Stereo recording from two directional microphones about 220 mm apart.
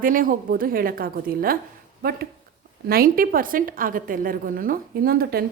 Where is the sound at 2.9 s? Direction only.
40° right (ahead or behind).